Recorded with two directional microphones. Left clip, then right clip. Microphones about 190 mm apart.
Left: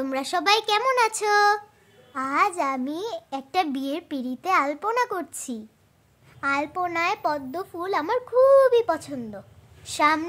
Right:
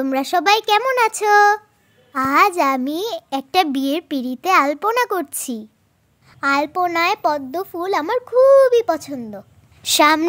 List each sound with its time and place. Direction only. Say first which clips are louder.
0.0 s a child's voice: right 7 dB; 35° right (ahead or behind)
6.4 s a child's voice: right 7 dB; 40° right (ahead or behind)
9.8 s speech: right 7 dB; 50° right (ahead or behind)